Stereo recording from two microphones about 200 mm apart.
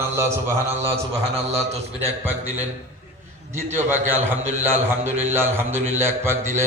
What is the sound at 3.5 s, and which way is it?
A man's voice, 10° right (ahead or behind).